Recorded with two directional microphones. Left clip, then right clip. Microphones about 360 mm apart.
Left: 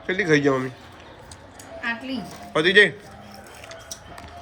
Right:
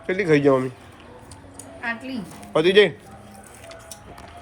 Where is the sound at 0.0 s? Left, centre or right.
Centre.